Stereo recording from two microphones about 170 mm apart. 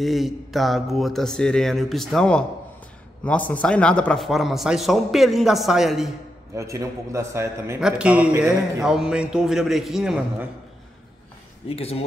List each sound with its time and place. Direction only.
0.0 s speech: centre (ahead or behind)
6.5 s a man's voice: 15° right (ahead or behind)
11.7 s speech: 35° left (ahead or behind)